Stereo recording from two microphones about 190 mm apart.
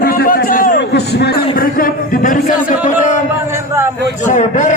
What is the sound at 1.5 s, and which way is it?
A man's voice, 50° left (ahead or behind).